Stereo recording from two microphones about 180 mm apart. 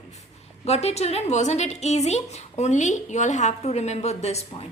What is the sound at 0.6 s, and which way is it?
A woman's voice, 35° left (ahead or behind).